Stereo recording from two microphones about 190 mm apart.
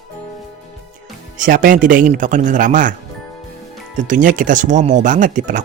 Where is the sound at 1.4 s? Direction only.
45° right (ahead or behind).